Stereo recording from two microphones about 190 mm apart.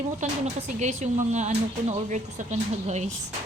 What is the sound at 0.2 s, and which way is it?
Speech, 40° right (ahead or behind).